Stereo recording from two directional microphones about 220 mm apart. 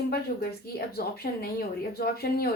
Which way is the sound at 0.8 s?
45° left (ahead or behind).